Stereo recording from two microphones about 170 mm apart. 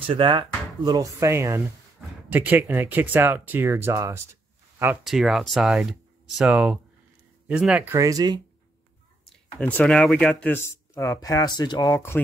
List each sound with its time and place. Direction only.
0.0 s speech: 30° right (ahead or behind)
5.0 s speech: centre (ahead or behind); by 8.4 s 20° right (ahead or behind)
9.6 s speech: 10° left (ahead or behind)